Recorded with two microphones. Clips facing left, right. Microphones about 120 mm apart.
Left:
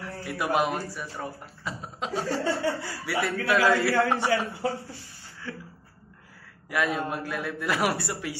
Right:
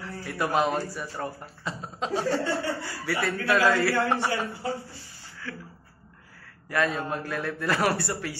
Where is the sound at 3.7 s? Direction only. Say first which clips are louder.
Left 1 dB; 25° left (ahead or behind).